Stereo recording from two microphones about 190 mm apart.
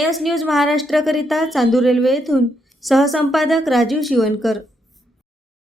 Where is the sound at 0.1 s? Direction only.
Centre (ahead or behind).